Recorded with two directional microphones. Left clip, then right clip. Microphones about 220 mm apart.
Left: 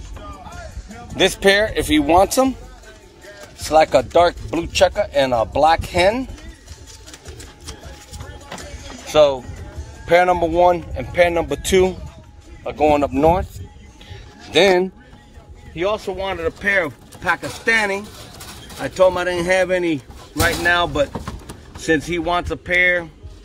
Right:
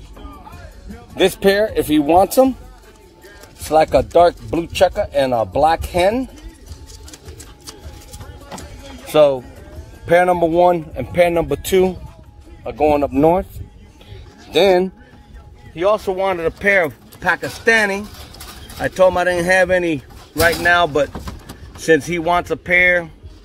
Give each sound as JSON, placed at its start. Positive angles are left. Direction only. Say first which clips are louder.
{"t": 1.1, "sound": "speech", "louder": "even", "side_deg": -45}
{"t": 3.6, "sound": "speech", "louder": "even", "side_deg": -50}
{"t": 9.0, "sound": "speech", "louder": "right 1 dB", "side_deg": -50}
{"t": 14.5, "sound": "speech", "louder": "right 1 dB", "side_deg": -35}